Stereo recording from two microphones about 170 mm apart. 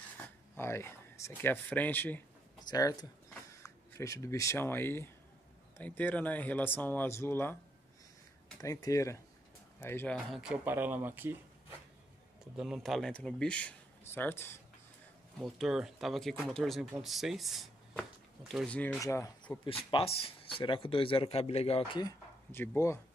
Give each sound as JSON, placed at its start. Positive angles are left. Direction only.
{"t": 0.6, "sound": "speech", "side_deg": 15}
{"t": 2.7, "sound": "speech", "side_deg": 20}
{"t": 8.5, "sound": "speech", "side_deg": 20}
{"t": 10.1, "sound": "speech", "side_deg": -5}
{"t": 12.5, "sound": "speech", "side_deg": 0}
{"t": 15.3, "sound": "speech", "side_deg": 0}
{"t": 18.9, "sound": "speech", "side_deg": 15}
{"t": 19.6, "sound": "speech", "side_deg": 30}
{"t": 22.5, "sound": "speech", "side_deg": 15}